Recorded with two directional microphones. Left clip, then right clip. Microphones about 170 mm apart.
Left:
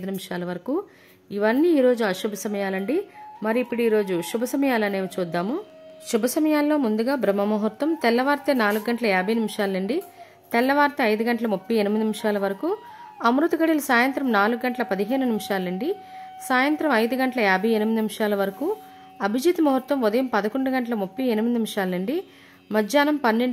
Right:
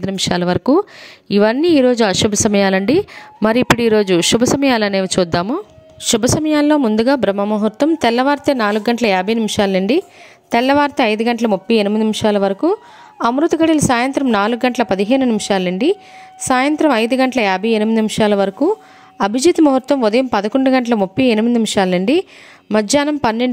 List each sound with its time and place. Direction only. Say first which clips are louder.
0.0 s a woman's voice: right 13 dB; 50° right (ahead or behind)